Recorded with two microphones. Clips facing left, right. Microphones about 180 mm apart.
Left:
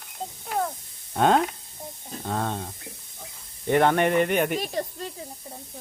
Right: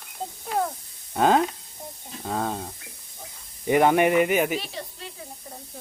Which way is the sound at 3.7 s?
5° right (ahead or behind).